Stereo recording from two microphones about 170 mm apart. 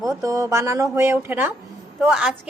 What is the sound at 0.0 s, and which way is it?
A woman's voice, 20° right (ahead or behind).